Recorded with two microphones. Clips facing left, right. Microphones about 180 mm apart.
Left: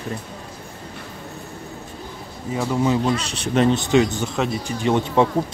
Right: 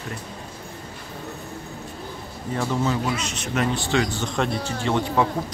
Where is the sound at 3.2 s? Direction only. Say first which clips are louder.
Left 6 dB; 30° left (ahead or behind).